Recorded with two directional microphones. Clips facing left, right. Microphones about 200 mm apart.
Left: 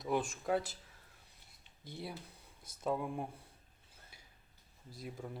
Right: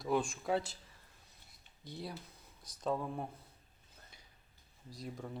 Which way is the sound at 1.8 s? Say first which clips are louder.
Right 1 dB; 25° left (ahead or behind).